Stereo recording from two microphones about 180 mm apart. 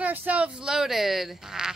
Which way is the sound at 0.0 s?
10° right (ahead or behind).